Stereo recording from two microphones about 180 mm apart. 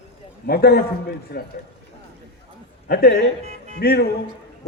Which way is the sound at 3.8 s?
60° left (ahead or behind).